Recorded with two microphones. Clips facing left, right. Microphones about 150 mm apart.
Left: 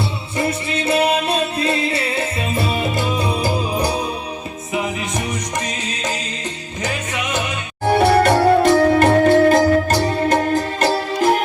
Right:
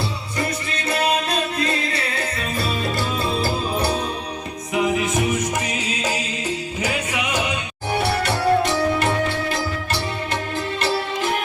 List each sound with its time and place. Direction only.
0.3 s music: 25° left (ahead or behind)
4.7 s music: centre (ahead or behind)
7.9 s music: 50° left (ahead or behind)